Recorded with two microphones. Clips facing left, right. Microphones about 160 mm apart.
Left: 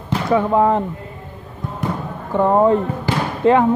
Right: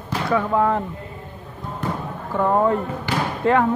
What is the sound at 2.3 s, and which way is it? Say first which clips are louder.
Speech: left 5 dB; 25° left (ahead or behind).